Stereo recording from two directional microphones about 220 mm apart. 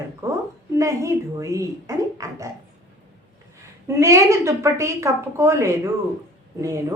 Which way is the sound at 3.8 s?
15° right (ahead or behind).